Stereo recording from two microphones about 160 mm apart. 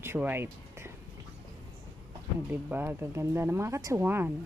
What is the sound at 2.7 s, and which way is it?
Speech, 10° right (ahead or behind).